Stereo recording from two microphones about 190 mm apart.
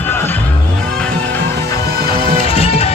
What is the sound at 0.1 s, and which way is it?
Music, 10° left (ahead or behind).